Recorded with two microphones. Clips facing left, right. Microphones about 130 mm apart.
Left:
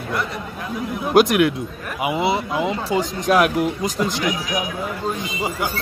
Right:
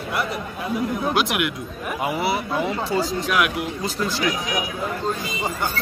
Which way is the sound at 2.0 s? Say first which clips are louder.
Left 4 dB; 20° left (ahead or behind).